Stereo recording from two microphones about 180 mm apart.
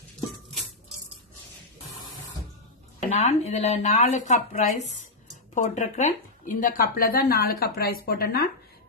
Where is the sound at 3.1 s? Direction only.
40° left (ahead or behind).